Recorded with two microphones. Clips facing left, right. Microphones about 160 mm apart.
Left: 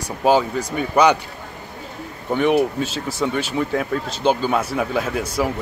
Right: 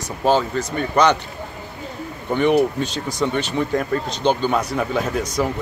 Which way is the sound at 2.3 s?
Centre (ahead or behind).